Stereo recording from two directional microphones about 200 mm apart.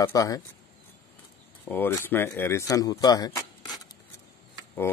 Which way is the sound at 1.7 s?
10° left (ahead or behind).